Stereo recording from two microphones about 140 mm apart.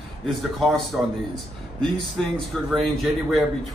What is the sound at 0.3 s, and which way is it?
Speech, centre (ahead or behind).